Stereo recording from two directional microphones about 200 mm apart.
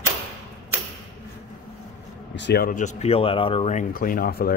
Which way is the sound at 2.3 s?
60° left (ahead or behind).